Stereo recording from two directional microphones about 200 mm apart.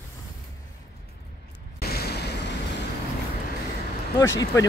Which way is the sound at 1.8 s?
50° left (ahead or behind).